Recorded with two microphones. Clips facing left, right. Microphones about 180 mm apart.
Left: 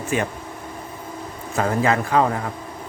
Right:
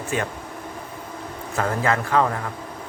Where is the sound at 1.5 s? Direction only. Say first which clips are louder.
Left 3 dB; 20° left (ahead or behind).